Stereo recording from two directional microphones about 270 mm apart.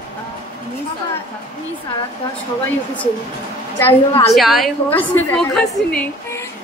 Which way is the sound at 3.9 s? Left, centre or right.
Centre.